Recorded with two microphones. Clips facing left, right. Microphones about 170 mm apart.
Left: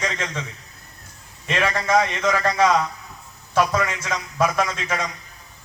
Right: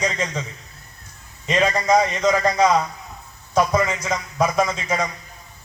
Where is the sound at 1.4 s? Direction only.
15° right (ahead or behind).